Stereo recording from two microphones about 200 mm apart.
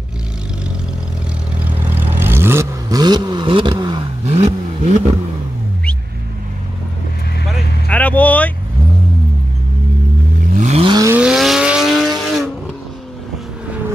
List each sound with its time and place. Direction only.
1.6 s vehicle: 10° right (ahead or behind); by 5.1 s 30° right (ahead or behind)
7.9 s vehicle: 5° left (ahead or behind)
10.5 s vehicle: 35° right (ahead or behind)
11.1 s vehicle: centre (ahead or behind)